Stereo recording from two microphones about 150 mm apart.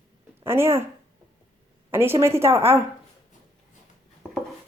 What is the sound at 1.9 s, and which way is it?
Speech, 15° right (ahead or behind).